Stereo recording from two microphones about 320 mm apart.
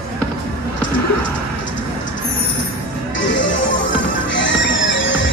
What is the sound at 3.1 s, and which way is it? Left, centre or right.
Music, left.